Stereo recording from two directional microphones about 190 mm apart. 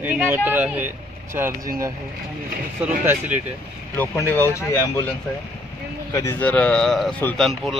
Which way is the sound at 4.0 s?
15° left (ahead or behind).